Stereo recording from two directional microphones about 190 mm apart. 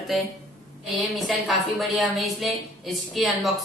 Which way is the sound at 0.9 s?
Centre (ahead or behind).